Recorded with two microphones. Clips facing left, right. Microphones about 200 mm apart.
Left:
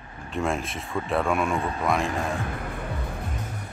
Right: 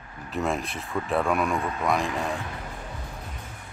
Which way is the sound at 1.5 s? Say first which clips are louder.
Left 1 dB; 30° left (ahead or behind).